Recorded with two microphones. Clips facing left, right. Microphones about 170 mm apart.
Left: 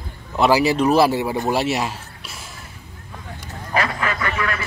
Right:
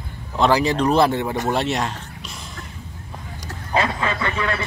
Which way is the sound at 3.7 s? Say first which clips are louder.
Right 1 dB; 25° right (ahead or behind).